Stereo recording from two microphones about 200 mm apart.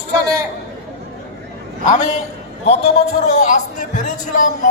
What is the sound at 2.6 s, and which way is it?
A man's voice, 30° left (ahead or behind).